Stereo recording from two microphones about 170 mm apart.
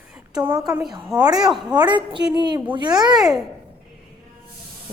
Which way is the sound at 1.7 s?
30° right (ahead or behind).